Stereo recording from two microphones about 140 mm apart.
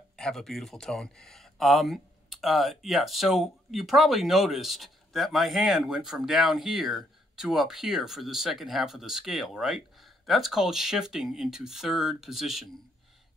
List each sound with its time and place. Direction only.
0.1 s speech: 5° left (ahead or behind)